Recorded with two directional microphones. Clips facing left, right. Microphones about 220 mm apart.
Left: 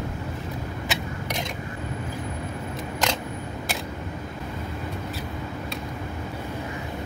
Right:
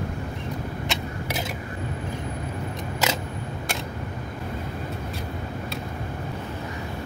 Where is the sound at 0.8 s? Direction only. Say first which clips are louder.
Even; centre (ahead or behind).